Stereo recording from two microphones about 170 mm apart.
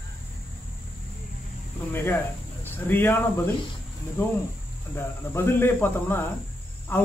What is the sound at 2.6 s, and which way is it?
Speech, 10° left (ahead or behind).